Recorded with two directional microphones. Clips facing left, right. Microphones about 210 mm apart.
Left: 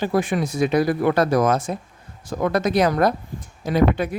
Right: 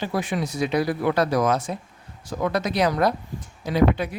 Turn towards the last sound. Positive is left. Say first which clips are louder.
# left 2 dB
turn(degrees=50)  # may be behind; listen again after turning